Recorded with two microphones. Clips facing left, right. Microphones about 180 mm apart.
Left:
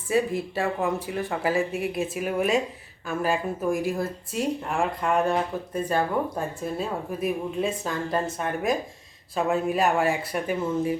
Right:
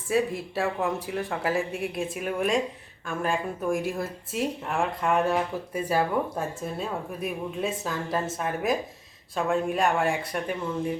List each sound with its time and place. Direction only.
0.1 s speech: centre (ahead or behind)